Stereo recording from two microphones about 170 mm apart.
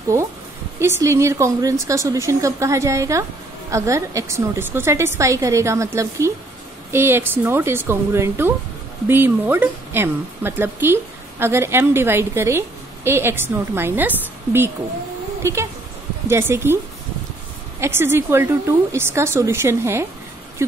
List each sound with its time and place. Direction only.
0.7 s speech: 15° right (ahead or behind)
17.7 s speech: 15° right (ahead or behind)